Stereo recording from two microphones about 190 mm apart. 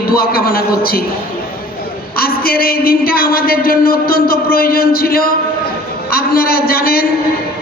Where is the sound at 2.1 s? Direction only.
55° left (ahead or behind).